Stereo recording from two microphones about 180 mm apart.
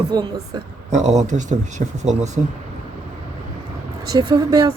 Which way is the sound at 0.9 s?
40° right (ahead or behind).